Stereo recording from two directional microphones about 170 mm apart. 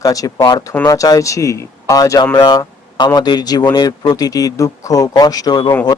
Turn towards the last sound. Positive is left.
turn(degrees=25)  # may be behind; listen again after turning